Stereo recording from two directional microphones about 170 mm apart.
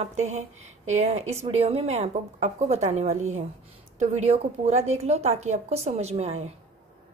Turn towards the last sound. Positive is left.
turn(degrees=-40)  # may be behind; listen again after turning